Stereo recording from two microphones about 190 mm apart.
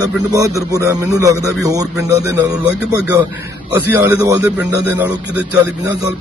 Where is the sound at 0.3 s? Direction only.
15° right (ahead or behind).